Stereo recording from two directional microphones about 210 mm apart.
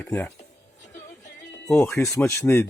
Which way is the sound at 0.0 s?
10° left (ahead or behind).